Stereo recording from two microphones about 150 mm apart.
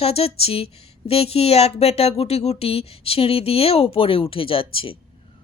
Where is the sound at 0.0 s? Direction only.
40° left (ahead or behind).